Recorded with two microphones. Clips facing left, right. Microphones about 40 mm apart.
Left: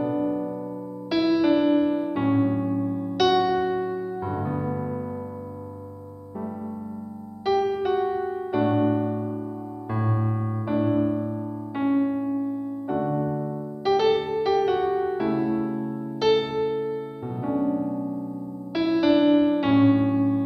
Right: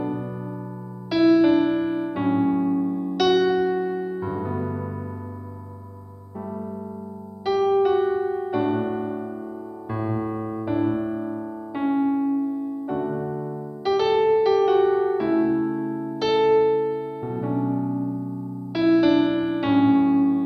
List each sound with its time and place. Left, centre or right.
0.0 s electric piano: centre
1.1 s keyboard: centre
3.8 s electric piano: centre
4.2 s music: centre
7.4 s piano: centre
8.0 s piano: centre
8.5 s electric piano: centre
14.4 s piano: centre
16.4 s electric piano: right
17.2 s piano: centre
18.7 s music: centre
19.4 s electric piano: centre